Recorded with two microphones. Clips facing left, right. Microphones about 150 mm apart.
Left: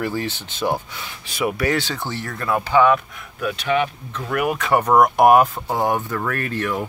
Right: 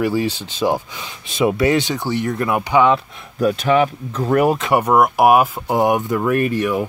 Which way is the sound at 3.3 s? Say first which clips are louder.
Right 6 dB; 40° right (ahead or behind).